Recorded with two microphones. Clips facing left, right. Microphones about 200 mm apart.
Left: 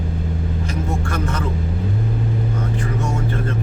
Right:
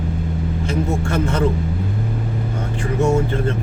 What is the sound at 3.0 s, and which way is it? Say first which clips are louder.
Music: right 6 dB; 25° right (ahead or behind).